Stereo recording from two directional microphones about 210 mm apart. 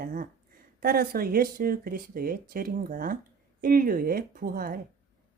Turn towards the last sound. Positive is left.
turn(degrees=-45)  # may be behind; listen again after turning